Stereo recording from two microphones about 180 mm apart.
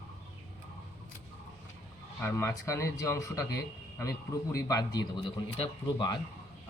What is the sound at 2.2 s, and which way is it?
A man's voice, 15° left (ahead or behind).